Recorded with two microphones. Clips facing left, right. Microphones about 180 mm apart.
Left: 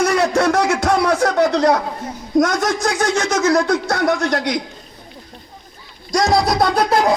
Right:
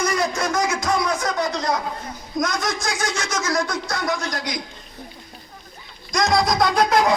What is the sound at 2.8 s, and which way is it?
Speech, 60° left (ahead or behind).